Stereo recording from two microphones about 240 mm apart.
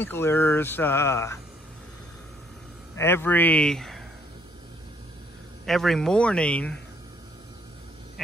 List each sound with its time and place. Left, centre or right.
0.0 s speech: centre
3.0 s speech: centre
5.7 s speech: centre